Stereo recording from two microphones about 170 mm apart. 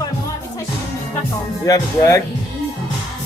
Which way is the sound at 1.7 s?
20° left (ahead or behind).